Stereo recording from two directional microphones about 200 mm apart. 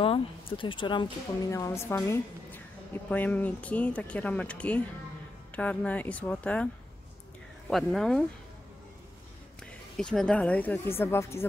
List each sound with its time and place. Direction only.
0.0 s a woman's voice: 25° left (ahead or behind); by 6.7 s 5° left (ahead or behind)
7.7 s speech: centre (ahead or behind)
9.6 s a woman's voice: 5° left (ahead or behind)